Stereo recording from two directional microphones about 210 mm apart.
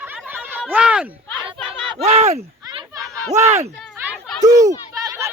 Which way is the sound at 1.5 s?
25° right (ahead or behind).